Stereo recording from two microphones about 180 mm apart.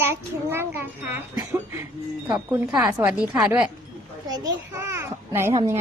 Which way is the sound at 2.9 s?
5° right (ahead or behind).